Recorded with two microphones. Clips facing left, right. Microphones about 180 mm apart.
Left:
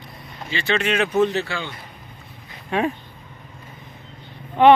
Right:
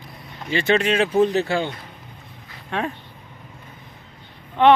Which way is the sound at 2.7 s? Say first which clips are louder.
Left 4 dB; 5° left (ahead or behind).